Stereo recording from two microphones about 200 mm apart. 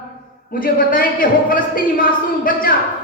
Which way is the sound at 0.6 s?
45° left (ahead or behind).